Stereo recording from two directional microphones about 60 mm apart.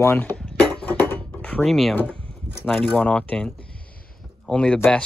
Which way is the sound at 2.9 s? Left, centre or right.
Left.